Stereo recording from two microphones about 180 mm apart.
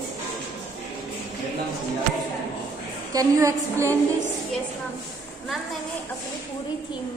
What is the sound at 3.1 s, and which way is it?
Speech, 20° right (ahead or behind).